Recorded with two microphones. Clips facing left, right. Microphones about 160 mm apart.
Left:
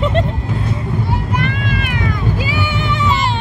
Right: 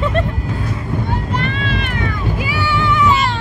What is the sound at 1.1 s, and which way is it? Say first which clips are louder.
Vehicle: left 1 dB; 10° left (ahead or behind).